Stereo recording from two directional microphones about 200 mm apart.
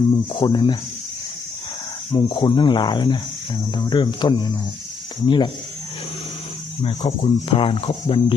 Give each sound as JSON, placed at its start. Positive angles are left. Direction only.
{"t": 0.3, "sound": "speech", "side_deg": 25}
{"t": 2.1, "sound": "speech", "side_deg": 25}
{"t": 6.8, "sound": "speech", "side_deg": 30}